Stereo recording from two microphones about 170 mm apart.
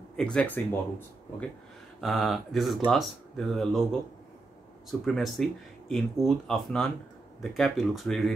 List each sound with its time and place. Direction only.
0.1 s speech: 5° left (ahead or behind)
5.0 s speech: centre (ahead or behind)